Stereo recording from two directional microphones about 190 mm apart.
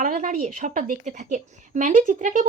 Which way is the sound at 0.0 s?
45° right (ahead or behind).